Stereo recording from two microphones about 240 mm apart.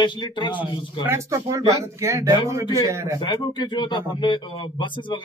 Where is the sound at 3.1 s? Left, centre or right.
Centre.